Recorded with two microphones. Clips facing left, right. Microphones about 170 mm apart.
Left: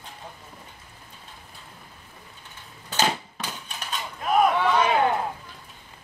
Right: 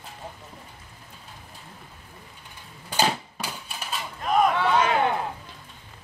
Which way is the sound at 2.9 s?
10° right (ahead or behind).